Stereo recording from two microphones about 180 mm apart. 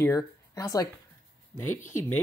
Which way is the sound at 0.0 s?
15° left (ahead or behind).